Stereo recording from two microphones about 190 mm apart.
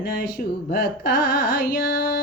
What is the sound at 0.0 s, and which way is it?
Carnatic music, 45° left (ahead or behind).